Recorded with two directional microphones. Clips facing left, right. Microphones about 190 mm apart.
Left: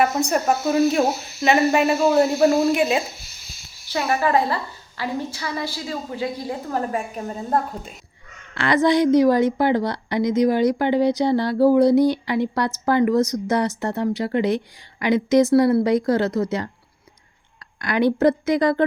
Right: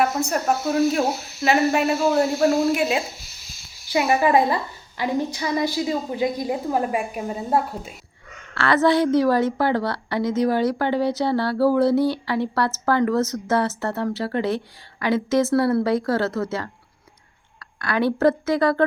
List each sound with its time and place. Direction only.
0.0 s speech: centre (ahead or behind)
3.8 s a woman's voice: 15° right (ahead or behind)
8.5 s a woman's voice: 15° left (ahead or behind)
17.7 s a woman's voice: 20° left (ahead or behind)